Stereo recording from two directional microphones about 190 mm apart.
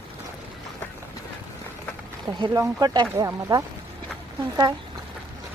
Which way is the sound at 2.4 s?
20° right (ahead or behind).